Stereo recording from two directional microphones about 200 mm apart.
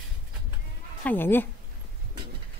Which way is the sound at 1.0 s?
10° left (ahead or behind).